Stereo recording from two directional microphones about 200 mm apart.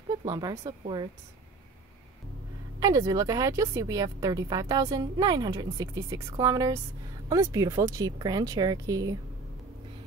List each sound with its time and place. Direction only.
0.2 s speech: 20° right (ahead or behind)
2.8 s speech: 20° right (ahead or behind)